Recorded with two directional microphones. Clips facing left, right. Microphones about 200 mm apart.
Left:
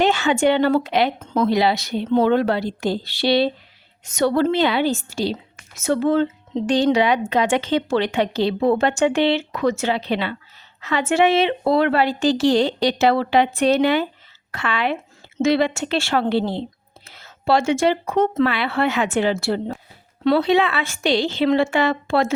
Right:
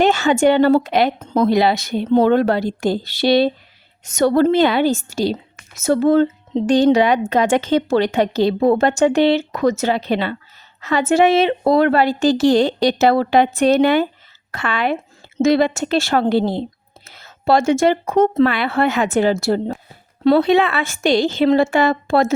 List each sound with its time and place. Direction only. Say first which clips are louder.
0.0 s a woman's voice: right 3 dB; 40° right (ahead or behind)
1.5 s a woman's voice: right 3 dB; 50° right (ahead or behind)